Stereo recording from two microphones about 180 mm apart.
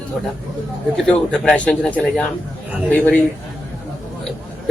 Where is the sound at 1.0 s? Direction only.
5° left (ahead or behind).